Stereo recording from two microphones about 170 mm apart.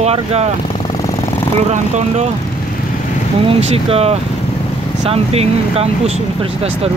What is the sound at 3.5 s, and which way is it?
Speech, 35° right (ahead or behind).